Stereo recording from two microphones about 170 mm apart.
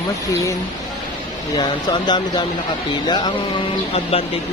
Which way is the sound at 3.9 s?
35° left (ahead or behind).